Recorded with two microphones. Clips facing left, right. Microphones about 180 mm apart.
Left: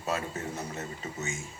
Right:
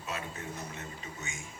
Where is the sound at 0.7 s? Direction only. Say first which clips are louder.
Left 6 dB; 40° left (ahead or behind).